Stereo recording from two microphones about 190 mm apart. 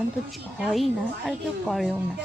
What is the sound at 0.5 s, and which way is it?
Speech, centre (ahead or behind).